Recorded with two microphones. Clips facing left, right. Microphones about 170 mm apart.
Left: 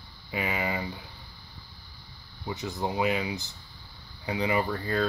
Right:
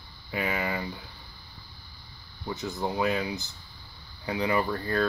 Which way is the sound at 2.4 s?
15° left (ahead or behind).